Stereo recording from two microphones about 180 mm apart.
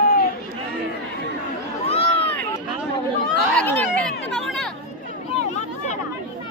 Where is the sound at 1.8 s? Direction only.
35° left (ahead or behind).